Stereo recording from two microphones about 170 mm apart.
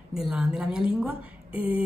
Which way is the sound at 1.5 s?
30° left (ahead or behind).